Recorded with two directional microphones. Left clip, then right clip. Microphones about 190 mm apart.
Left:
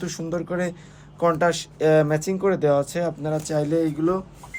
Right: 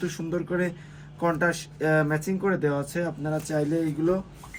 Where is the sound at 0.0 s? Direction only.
40° left (ahead or behind).